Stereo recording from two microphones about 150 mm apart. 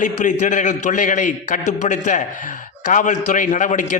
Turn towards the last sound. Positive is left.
turn(degrees=55)  # may be behind; listen again after turning